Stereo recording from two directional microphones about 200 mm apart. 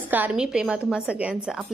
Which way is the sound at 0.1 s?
5° right (ahead or behind).